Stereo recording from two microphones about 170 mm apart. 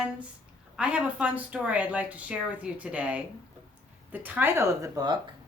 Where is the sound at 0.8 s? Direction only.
5° right (ahead or behind).